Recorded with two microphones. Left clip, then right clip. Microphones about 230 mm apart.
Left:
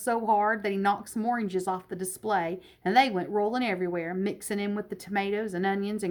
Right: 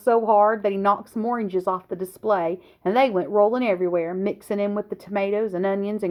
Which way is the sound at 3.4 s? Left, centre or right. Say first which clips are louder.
Right 8 dB; centre.